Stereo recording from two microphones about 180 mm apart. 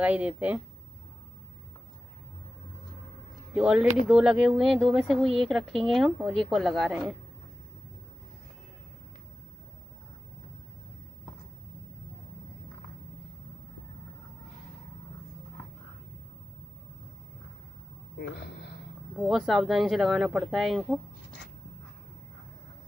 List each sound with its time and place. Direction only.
0.0 s speech: 5° right (ahead or behind)
3.5 s speech: 5° right (ahead or behind)
18.3 s a sound: 70° left (ahead or behind)
19.2 s speech: centre (ahead or behind)